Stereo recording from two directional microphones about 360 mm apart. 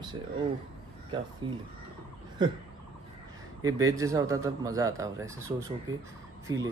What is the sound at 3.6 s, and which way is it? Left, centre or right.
Speech, centre.